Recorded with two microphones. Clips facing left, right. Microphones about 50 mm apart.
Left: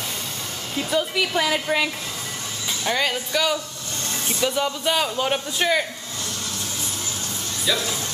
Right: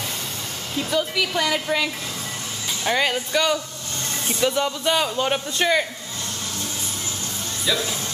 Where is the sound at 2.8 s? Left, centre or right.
Centre.